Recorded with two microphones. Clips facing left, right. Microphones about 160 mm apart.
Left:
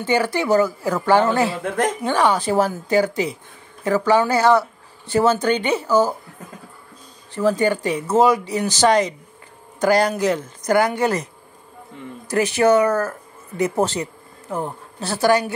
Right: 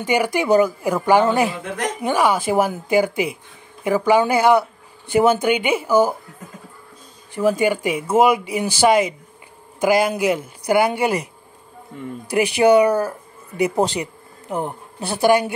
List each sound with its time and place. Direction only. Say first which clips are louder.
0.0 s a man's voice: even; 15° right (ahead or behind)
7.3 s speech: even; 10° right (ahead or behind)
12.3 s speech: right 1 dB; 15° right (ahead or behind)